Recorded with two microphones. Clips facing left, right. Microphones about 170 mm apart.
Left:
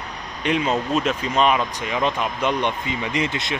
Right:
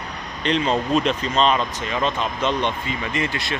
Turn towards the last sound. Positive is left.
turn(degrees=20)  # may be behind; listen again after turning